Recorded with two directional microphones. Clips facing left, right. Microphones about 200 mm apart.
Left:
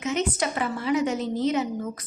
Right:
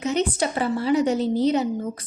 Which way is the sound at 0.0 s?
35° right (ahead or behind).